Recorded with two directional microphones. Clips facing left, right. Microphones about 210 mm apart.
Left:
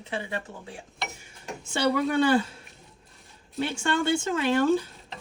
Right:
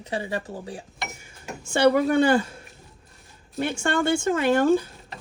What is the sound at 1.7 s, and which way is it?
Speech, 50° right (ahead or behind).